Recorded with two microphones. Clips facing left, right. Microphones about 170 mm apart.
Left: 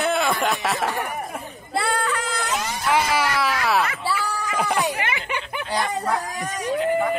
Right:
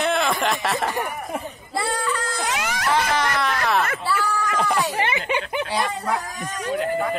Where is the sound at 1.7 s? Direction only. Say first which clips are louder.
Left 1 dB; 60° left (ahead or behind).